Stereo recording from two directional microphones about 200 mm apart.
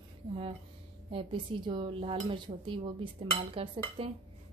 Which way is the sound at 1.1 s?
25° right (ahead or behind).